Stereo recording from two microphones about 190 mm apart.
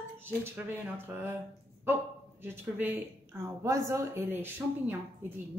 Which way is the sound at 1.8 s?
10° right (ahead or behind).